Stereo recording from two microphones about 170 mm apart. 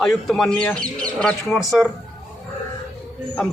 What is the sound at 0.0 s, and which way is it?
Speech, centre (ahead or behind).